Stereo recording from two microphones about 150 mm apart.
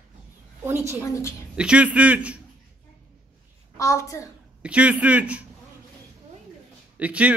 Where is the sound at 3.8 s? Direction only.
20° left (ahead or behind).